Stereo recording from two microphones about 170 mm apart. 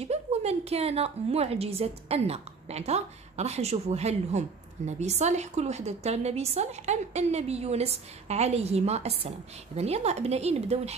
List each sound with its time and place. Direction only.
0.0 s a woman's voice: 40° right (ahead or behind)